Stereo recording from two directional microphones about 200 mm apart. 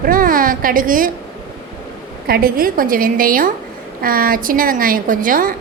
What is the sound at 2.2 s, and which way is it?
A woman's voice, 50° right (ahead or behind).